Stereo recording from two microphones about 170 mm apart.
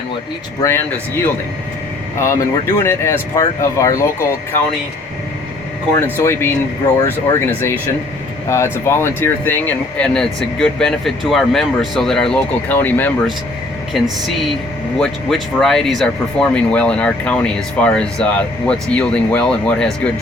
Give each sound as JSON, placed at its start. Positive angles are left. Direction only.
{"t": 0.6, "sound": "speech", "side_deg": 15}
{"t": 6.1, "sound": "speech", "side_deg": 15}
{"t": 13.9, "sound": "speech", "side_deg": 0}